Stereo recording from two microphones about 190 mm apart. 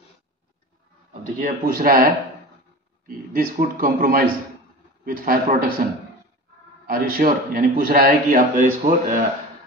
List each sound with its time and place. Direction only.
1.4 s a man's voice: 50° right (ahead or behind)
3.3 s a man's voice: 45° right (ahead or behind)
6.9 s a man's voice: 50° right (ahead or behind)